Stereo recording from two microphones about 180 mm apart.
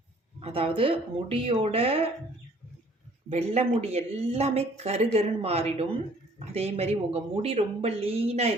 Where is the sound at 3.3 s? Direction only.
35° right (ahead or behind).